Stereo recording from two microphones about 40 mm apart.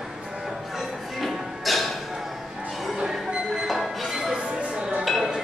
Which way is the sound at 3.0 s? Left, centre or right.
Centre.